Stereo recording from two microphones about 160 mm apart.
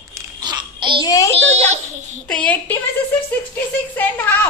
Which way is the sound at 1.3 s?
40° right (ahead or behind).